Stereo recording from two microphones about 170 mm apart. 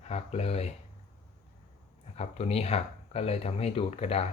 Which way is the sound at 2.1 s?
40° left (ahead or behind).